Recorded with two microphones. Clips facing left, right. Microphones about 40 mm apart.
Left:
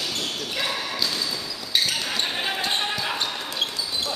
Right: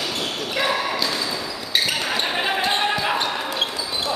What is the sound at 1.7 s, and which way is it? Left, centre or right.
Basketball bounce, centre.